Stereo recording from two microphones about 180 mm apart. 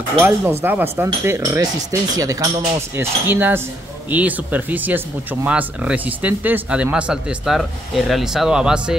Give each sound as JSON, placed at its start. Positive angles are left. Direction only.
{"t": 0.2, "sound": "speech", "side_deg": -15}